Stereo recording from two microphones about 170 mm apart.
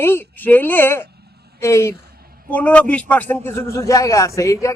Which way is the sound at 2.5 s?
10° left (ahead or behind).